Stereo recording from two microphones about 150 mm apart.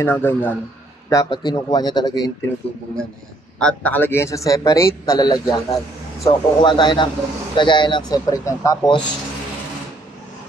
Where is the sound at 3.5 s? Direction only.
10° left (ahead or behind); by 9.0 s 25° left (ahead or behind).